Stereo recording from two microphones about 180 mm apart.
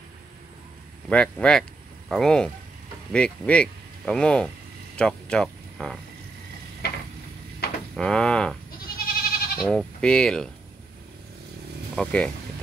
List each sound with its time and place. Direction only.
1.1 s speech: 5° left (ahead or behind)
6.8 s stir: 60° left (ahead or behind)
7.9 s speech: 5° left (ahead or behind)
8.8 s goat: 55° left (ahead or behind)
9.6 s speech: centre (ahead or behind)
11.9 s speech: 5° left (ahead or behind)